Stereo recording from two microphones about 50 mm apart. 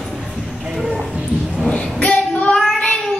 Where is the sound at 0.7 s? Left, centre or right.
Centre.